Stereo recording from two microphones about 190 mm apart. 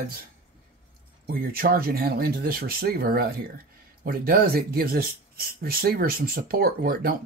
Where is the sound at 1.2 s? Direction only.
50° right (ahead or behind).